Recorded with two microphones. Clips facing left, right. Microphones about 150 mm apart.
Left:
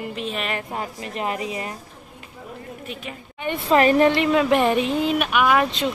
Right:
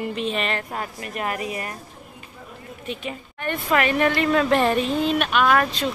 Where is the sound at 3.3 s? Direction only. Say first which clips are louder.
Left 2 dB; 15° left (ahead or behind).